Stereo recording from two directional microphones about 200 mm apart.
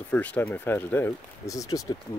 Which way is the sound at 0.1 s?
10° left (ahead or behind).